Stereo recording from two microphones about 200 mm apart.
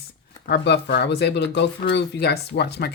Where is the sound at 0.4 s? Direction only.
55° left (ahead or behind).